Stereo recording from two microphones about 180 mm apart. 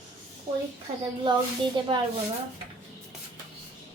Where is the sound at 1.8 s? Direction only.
25° right (ahead or behind).